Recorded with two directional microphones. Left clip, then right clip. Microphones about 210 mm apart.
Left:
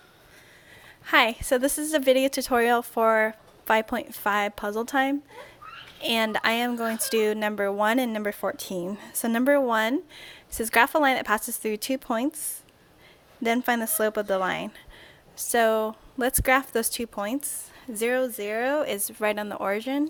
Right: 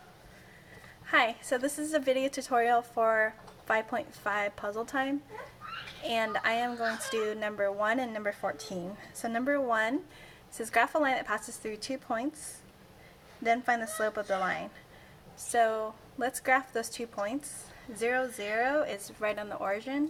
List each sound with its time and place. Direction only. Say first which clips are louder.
1.0 s speech: left 6 dB; 45° left (ahead or behind)
13.4 s speech: left 3 dB; 50° left (ahead or behind)